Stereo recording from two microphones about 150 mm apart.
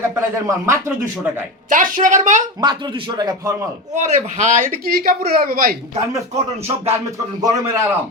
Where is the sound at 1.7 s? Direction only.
60° right (ahead or behind).